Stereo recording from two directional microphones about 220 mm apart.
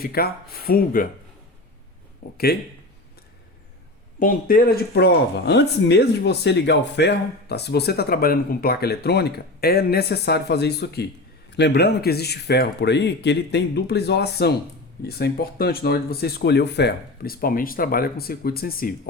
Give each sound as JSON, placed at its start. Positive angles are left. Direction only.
{"t": 0.0, "sound": "speech", "side_deg": 45}
{"t": 2.2, "sound": "speech", "side_deg": 40}
{"t": 4.2, "sound": "speech", "side_deg": 40}